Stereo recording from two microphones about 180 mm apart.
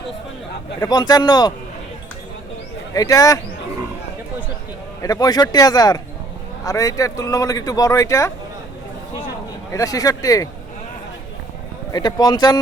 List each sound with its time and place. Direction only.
0.8 s speech: 20° left (ahead or behind)
2.9 s speech: 20° left (ahead or behind)
5.0 s speech: 20° left (ahead or behind)
9.7 s speech: 20° left (ahead or behind)
11.9 s speech: 20° left (ahead or behind)